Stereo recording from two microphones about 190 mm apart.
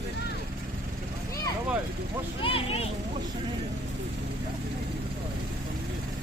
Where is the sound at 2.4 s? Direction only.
30° left (ahead or behind).